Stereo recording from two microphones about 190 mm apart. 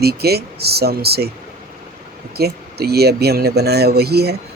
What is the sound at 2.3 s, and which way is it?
Speech, 55° right (ahead or behind).